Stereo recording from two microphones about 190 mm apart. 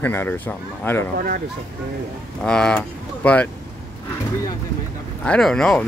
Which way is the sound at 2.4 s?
5° left (ahead or behind).